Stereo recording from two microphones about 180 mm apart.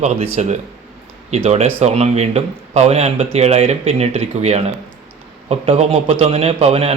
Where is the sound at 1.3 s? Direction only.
35° right (ahead or behind).